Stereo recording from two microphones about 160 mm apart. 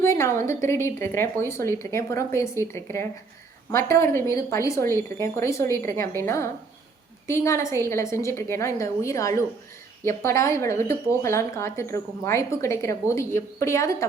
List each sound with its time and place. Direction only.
0.0 s speech: 15° left (ahead or behind)